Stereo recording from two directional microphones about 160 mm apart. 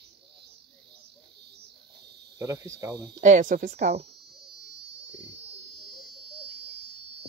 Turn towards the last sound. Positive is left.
turn(degrees=-90)